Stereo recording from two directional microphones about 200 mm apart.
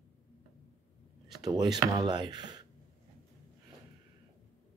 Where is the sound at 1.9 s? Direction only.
20° right (ahead or behind).